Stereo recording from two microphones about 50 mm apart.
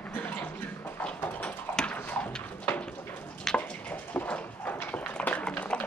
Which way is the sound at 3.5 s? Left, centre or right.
Centre.